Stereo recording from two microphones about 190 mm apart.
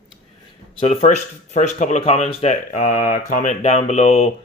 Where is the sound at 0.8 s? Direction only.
35° left (ahead or behind).